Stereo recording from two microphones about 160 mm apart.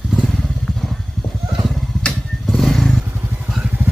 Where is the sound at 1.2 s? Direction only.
Centre (ahead or behind).